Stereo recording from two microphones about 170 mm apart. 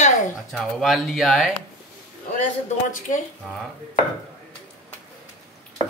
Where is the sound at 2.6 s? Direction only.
50° left (ahead or behind).